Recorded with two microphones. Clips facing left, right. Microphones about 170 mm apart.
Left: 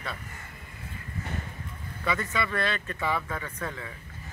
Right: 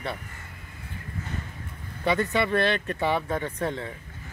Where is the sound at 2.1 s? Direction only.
30° right (ahead or behind).